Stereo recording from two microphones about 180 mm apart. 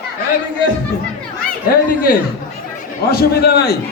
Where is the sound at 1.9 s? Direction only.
50° left (ahead or behind).